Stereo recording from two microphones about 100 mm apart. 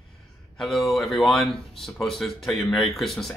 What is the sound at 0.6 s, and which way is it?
Speech, centre (ahead or behind).